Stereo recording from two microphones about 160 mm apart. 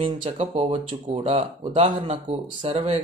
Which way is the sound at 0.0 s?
35° right (ahead or behind).